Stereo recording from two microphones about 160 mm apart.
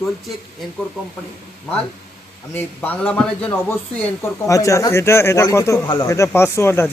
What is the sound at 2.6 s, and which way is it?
Speech, 10° left (ahead or behind).